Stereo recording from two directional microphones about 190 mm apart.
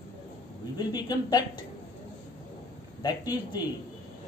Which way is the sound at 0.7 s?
20° left (ahead or behind).